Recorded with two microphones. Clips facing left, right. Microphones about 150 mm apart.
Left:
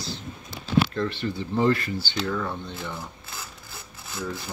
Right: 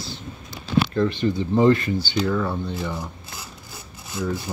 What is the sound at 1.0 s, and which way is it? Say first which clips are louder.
Speech: right 6 dB; 15° right (ahead or behind).